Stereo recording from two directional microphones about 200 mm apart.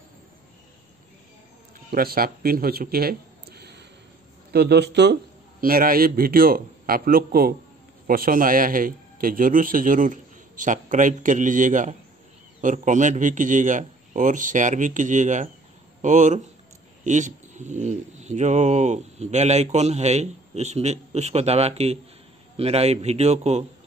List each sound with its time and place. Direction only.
1.9 s a man's voice: 45° right (ahead or behind)